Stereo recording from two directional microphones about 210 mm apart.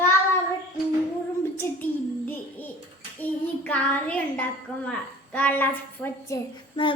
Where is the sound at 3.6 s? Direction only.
5° left (ahead or behind).